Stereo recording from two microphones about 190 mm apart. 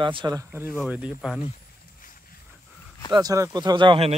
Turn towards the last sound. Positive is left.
turn(degrees=-30)  # may be behind; listen again after turning